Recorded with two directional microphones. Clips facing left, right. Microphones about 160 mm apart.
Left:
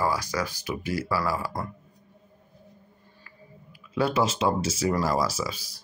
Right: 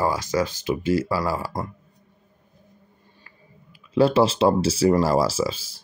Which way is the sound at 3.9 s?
30° right (ahead or behind).